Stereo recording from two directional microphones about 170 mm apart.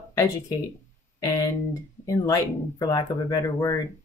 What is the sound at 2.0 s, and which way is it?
Speech, 20° left (ahead or behind).